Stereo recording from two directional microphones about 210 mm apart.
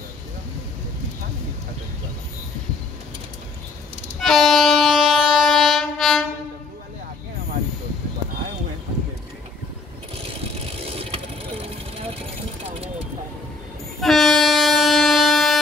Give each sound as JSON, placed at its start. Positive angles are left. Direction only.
{"t": 4.2, "sound": "train", "side_deg": 0}
{"t": 10.8, "sound": "vehicle", "side_deg": -25}
{"t": 14.0, "sound": "train", "side_deg": 0}